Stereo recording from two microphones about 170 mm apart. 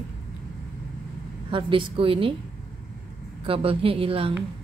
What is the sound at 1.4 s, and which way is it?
Speech, 30° right (ahead or behind).